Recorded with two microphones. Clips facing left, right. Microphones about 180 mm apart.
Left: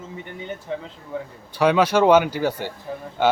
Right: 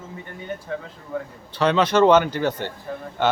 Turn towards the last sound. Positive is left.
turn(degrees=10)  # may be behind; listen again after turning